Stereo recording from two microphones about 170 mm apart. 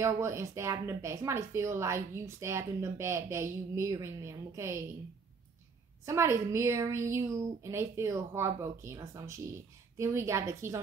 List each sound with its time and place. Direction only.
0.0 s a woman's voice: 15° right (ahead or behind)
6.0 s a woman's voice: 15° right (ahead or behind)